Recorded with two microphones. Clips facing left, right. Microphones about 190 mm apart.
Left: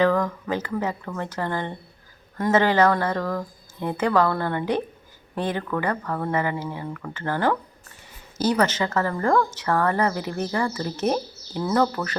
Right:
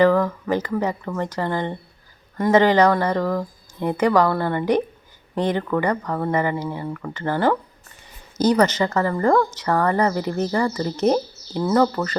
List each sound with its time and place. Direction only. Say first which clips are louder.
0.0 s speech: right 4 dB; 10° right (ahead or behind)
11.6 s speech: right 4 dB; 5° right (ahead or behind)